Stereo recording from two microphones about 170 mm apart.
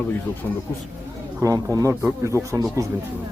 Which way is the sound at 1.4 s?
20° right (ahead or behind).